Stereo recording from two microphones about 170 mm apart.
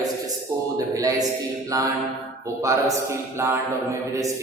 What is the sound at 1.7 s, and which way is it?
A man's voice, 20° right (ahead or behind).